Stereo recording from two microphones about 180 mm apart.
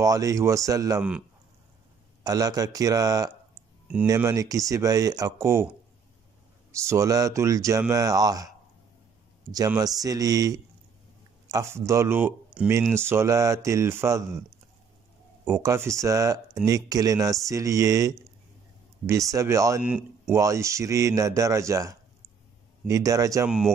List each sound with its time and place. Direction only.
0.0 s speech: 20° right (ahead or behind)
2.2 s speech: 20° right (ahead or behind)
6.9 s speech: 20° right (ahead or behind)
9.7 s speech: 20° right (ahead or behind)
15.4 s speech: 15° right (ahead or behind)
19.8 s speech: 5° right (ahead or behind)
20.3 s speech: 15° right (ahead or behind)